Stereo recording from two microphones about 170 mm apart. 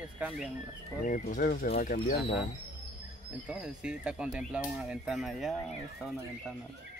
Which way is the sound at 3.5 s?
5° right (ahead or behind).